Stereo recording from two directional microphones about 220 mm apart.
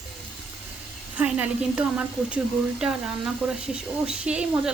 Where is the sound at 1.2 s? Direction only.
5° right (ahead or behind).